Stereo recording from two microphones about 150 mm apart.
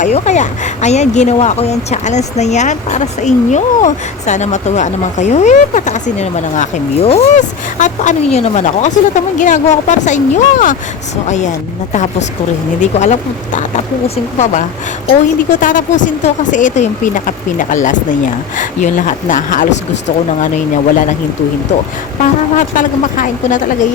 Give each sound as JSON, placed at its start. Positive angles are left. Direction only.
{"t": 0.0, "sound": "speech", "side_deg": 50}
{"t": 15.6, "sound": "speech", "side_deg": 60}
{"t": 22.2, "sound": "speech", "side_deg": 60}